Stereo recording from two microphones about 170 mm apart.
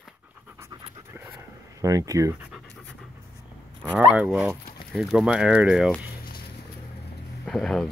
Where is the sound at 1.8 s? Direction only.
20° right (ahead or behind).